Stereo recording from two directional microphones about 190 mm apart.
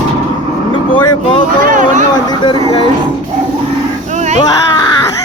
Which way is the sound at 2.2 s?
20° left (ahead or behind).